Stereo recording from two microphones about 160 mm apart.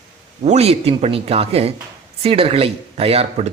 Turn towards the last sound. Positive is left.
turn(degrees=-40)  # may be behind; listen again after turning